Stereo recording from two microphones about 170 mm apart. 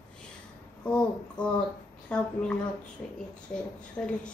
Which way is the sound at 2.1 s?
5° left (ahead or behind).